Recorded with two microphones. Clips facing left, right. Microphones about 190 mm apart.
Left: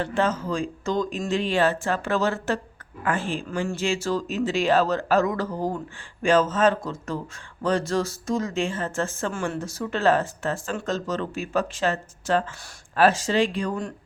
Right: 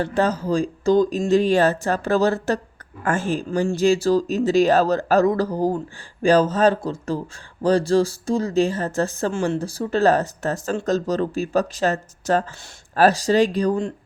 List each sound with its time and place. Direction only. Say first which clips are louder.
0.0 s a woman's voice: right 3 dB; 40° right (ahead or behind)